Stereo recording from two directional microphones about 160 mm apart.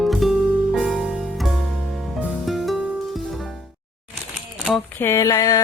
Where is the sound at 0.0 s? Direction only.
Centre (ahead or behind).